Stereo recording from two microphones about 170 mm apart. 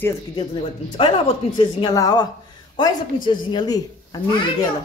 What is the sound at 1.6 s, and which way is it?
Speech, 25° left (ahead or behind).